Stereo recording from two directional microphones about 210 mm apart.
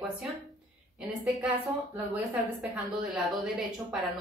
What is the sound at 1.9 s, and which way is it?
Speech, 10° right (ahead or behind).